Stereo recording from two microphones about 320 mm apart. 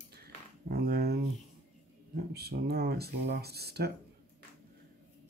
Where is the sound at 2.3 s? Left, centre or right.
Right.